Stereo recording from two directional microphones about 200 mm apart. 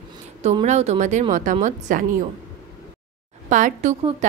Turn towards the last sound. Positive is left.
turn(degrees=-35)  # may be behind; listen again after turning